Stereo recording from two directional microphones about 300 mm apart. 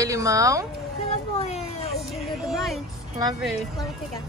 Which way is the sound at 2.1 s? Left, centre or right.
Centre.